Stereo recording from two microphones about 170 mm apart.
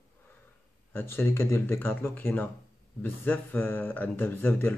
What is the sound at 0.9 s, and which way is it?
Speech, 15° left (ahead or behind).